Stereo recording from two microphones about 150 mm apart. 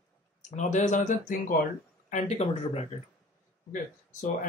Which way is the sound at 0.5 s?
55° left (ahead or behind).